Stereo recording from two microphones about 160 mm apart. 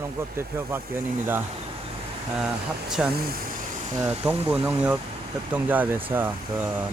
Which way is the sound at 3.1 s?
70° right (ahead or behind).